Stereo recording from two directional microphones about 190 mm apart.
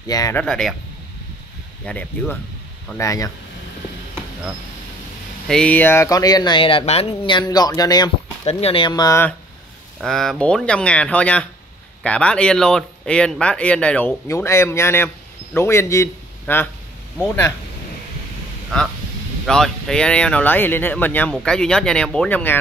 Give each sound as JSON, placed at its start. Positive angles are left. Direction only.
{"t": 0.0, "sound": "speech", "side_deg": 20}
{"t": 0.4, "sound": "speech", "side_deg": 0}
{"t": 1.9, "sound": "speech", "side_deg": 5}
{"t": 5.5, "sound": "speech", "side_deg": 5}
{"t": 8.5, "sound": "speech", "side_deg": 30}
{"t": 9.9, "sound": "a man's voice", "side_deg": 0}
{"t": 18.7, "sound": "speech", "side_deg": 5}